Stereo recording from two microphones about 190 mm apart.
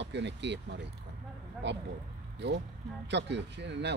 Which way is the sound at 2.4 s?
65° right (ahead or behind).